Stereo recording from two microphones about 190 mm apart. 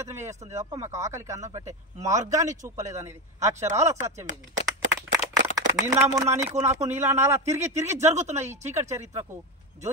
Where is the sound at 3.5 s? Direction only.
40° right (ahead or behind).